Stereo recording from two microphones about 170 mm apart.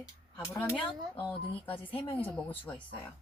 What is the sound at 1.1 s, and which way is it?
Speech, 30° left (ahead or behind).